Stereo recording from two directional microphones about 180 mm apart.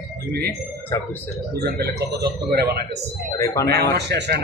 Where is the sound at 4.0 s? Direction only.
70° right (ahead or behind).